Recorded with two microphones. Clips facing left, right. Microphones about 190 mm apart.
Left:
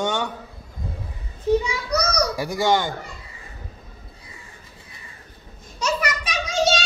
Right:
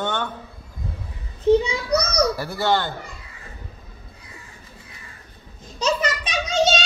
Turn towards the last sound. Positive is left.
turn(degrees=-25)  # may be behind; listen again after turning